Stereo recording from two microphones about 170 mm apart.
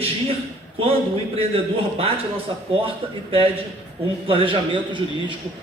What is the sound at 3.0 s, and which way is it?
Speech, 35° right (ahead or behind).